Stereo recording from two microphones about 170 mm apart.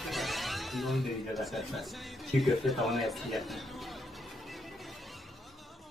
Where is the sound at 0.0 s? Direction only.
Centre (ahead or behind).